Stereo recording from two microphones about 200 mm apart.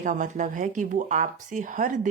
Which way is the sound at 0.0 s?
40° right (ahead or behind).